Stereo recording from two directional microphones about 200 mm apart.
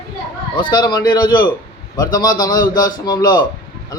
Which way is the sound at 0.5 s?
20° left (ahead or behind).